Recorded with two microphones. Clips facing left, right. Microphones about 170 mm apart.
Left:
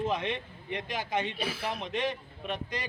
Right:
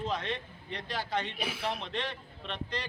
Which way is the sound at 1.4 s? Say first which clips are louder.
Left 1 dB; centre (ahead or behind).